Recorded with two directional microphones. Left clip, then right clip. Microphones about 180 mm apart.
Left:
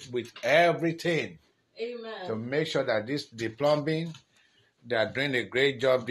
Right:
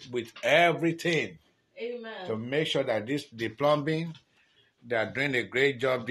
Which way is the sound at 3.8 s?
10° right (ahead or behind).